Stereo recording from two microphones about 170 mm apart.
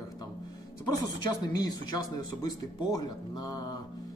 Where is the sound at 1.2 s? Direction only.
25° left (ahead or behind).